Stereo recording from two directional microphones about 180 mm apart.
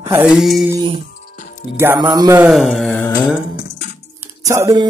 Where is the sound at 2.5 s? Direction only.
Centre (ahead or behind).